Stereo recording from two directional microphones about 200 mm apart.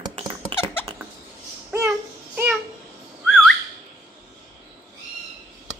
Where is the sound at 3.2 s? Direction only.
Centre (ahead or behind).